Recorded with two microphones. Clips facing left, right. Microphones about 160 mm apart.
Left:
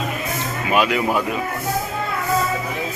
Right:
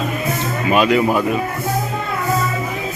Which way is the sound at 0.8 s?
10° left (ahead or behind).